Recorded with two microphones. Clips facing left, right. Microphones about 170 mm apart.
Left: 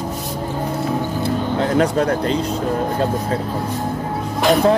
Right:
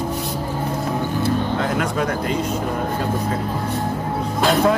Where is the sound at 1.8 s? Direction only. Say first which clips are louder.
Left 5 dB; 35° left (ahead or behind).